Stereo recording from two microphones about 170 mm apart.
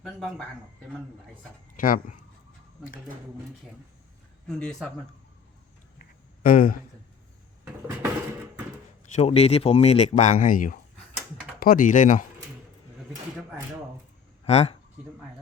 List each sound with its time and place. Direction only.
0.0 s speech: 5° left (ahead or behind)
1.7 s speech: 55° left (ahead or behind)
4.4 s speech: 5° left (ahead or behind)
6.0 s a sound: 55° left (ahead or behind)
9.1 s speech: 35° left (ahead or behind)
14.4 s speech: 40° left (ahead or behind)